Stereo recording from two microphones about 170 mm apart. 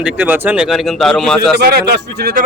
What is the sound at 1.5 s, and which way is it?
Speech, 65° right (ahead or behind).